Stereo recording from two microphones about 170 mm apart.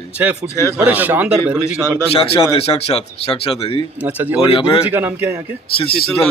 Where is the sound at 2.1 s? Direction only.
35° left (ahead or behind).